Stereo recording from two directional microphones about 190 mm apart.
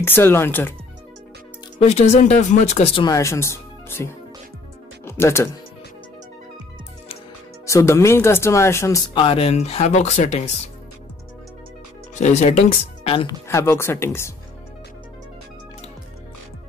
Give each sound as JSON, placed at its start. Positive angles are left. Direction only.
{"t": 0.0, "sound": "speech", "side_deg": 10}
{"t": 1.8, "sound": "speech", "side_deg": 35}
{"t": 7.6, "sound": "speech", "side_deg": 15}
{"t": 12.2, "sound": "speech", "side_deg": 35}
{"t": 13.5, "sound": "speech", "side_deg": 15}